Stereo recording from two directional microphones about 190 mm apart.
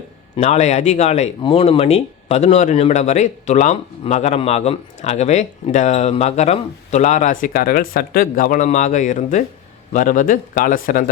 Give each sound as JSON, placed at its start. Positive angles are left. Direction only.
{"t": 0.3, "sound": "speech", "side_deg": 35}